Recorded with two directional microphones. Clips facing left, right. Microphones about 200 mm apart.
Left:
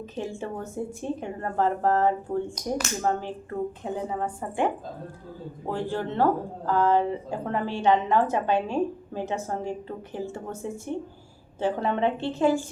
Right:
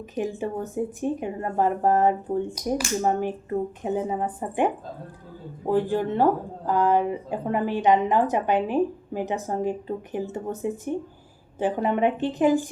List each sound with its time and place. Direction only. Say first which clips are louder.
0.2 s speech: right 5 dB; 15° right (ahead or behind)